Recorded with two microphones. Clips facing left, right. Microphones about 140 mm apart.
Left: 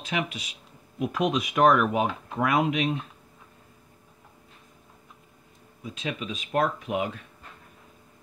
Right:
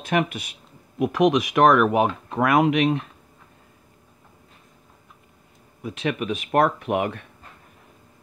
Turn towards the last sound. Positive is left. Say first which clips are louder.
# right 5 dB
turn(degrees=-60)  # may be behind; listen again after turning